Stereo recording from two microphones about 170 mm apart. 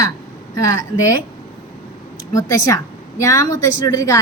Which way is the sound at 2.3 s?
20° left (ahead or behind).